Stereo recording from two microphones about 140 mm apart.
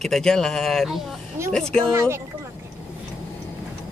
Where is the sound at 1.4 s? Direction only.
20° right (ahead or behind).